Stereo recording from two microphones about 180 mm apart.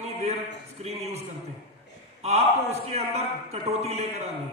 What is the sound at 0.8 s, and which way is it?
A man's voice, 35° right (ahead or behind).